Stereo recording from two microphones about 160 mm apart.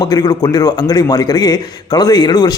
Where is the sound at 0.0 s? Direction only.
25° left (ahead or behind).